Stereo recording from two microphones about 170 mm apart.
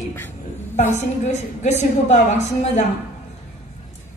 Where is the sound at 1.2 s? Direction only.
45° left (ahead or behind).